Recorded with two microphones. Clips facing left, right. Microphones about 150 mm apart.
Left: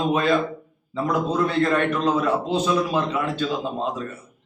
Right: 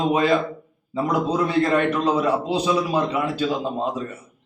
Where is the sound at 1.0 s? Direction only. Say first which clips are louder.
Right 1 dB; 15° right (ahead or behind).